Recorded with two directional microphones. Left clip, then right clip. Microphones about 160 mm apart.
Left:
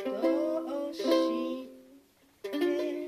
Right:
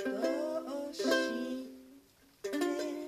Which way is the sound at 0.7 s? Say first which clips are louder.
Left 4 dB; centre (ahead or behind).